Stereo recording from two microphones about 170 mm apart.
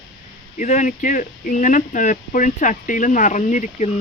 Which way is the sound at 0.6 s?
45° left (ahead or behind).